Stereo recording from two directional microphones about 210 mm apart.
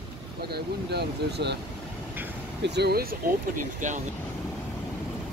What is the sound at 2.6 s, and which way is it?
Speech, 50° right (ahead or behind).